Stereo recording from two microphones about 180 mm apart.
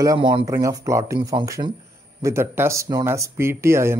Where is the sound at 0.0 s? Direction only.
20° right (ahead or behind).